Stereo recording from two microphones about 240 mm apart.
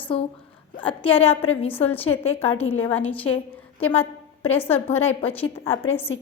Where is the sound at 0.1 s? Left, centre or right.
Left.